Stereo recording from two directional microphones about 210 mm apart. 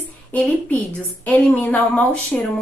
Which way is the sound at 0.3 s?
5° left (ahead or behind).